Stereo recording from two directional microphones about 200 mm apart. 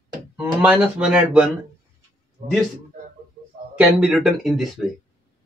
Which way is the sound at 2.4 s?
40° right (ahead or behind).